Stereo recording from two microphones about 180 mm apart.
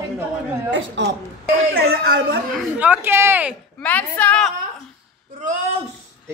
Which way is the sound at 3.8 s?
10° left (ahead or behind).